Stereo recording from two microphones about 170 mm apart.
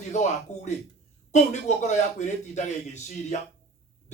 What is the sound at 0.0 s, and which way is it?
A man's voice, 45° left (ahead or behind).